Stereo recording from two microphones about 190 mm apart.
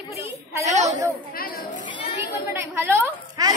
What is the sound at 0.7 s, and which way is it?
Speech, 40° right (ahead or behind).